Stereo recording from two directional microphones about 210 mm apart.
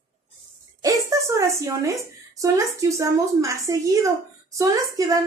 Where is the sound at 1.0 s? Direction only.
15° right (ahead or behind).